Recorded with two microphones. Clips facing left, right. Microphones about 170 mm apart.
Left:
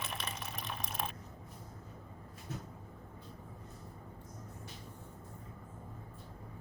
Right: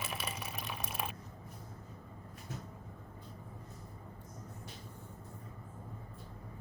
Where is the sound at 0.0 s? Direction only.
5° right (ahead or behind).